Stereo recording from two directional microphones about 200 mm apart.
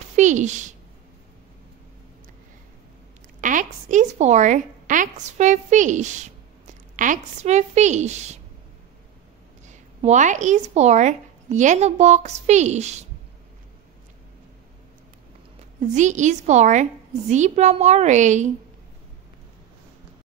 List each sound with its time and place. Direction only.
0.1 s a sound: 35° right (ahead or behind)
3.3 s a woman's voice: 40° right (ahead or behind)
9.7 s speech: 35° right (ahead or behind)
15.8 s speech: 35° right (ahead or behind)